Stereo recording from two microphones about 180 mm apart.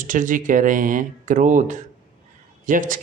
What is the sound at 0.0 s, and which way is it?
Speech, 45° right (ahead or behind).